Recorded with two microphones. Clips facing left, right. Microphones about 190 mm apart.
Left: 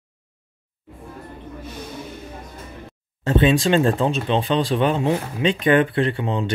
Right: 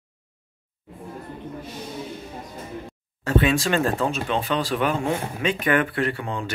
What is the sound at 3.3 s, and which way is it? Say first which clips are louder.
Speech: left 4 dB; 20° left (ahead or behind).